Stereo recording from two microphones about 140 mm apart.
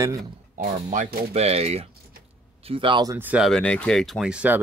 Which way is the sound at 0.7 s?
60° right (ahead or behind).